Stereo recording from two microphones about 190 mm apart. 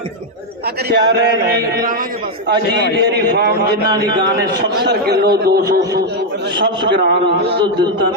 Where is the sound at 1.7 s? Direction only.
45° right (ahead or behind).